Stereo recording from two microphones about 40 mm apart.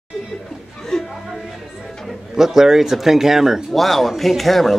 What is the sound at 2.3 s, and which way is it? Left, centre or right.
Speech, centre.